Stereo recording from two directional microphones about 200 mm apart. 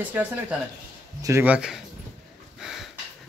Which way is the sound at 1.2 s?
10° right (ahead or behind).